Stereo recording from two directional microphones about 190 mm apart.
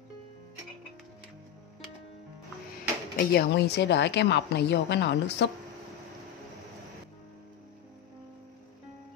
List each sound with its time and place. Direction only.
3.2 s a woman's voice: 60° left (ahead or behind)